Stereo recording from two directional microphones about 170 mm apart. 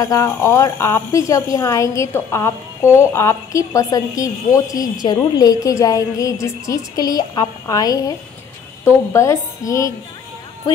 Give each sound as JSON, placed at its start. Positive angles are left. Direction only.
{"t": 0.0, "sound": "a woman's voice", "side_deg": 20}